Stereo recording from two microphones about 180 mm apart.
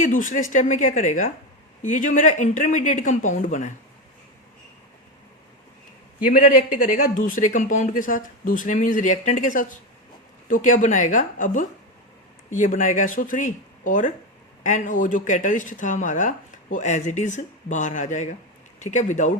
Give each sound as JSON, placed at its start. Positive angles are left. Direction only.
{"t": 0.0, "sound": "speech", "side_deg": 45}
{"t": 6.2, "sound": "speech", "side_deg": 50}